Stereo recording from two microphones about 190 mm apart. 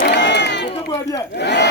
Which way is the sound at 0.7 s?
20° left (ahead or behind).